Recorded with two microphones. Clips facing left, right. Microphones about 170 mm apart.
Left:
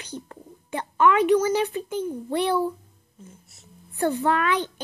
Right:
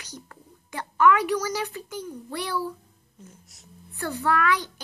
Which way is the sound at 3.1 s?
5° left (ahead or behind).